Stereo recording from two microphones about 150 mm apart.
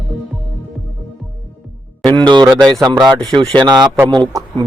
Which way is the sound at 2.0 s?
30° right (ahead or behind).